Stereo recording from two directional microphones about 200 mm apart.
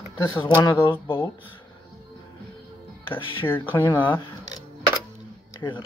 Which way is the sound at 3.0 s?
25° left (ahead or behind).